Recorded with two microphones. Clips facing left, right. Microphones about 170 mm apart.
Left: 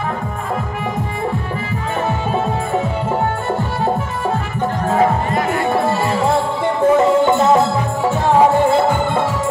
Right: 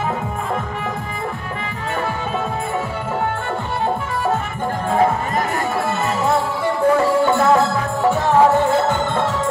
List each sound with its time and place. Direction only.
5.7 s music: 30° left (ahead or behind); by 9.2 s 10° left (ahead or behind)